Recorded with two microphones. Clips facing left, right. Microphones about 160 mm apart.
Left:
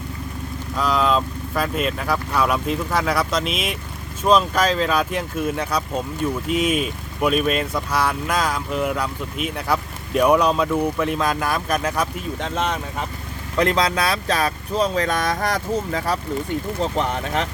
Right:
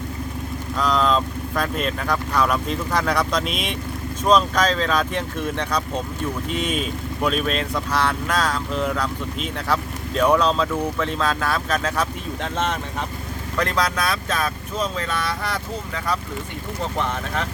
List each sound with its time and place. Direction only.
0.8 s speech: 5° left (ahead or behind)
12.4 s speech: centre (ahead or behind)
13.6 s speech: 20° left (ahead or behind); by 16.2 s 40° left (ahead or behind)
16.8 s speech: 20° left (ahead or behind)